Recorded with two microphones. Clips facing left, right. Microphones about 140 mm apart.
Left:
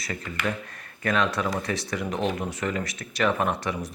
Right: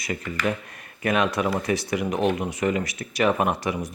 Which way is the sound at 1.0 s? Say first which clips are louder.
Right 3 dB; 10° right (ahead or behind).